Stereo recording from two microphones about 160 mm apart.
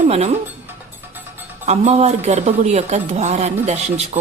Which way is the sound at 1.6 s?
45° right (ahead or behind).